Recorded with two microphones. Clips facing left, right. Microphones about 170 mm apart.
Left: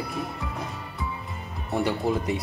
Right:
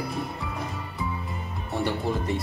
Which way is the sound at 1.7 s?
15° left (ahead or behind).